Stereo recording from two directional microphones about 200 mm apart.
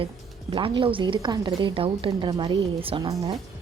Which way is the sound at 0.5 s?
25° right (ahead or behind).